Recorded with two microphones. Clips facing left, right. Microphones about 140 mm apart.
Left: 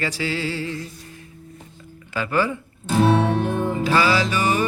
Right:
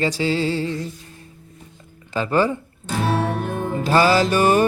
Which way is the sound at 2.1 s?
30° right (ahead or behind).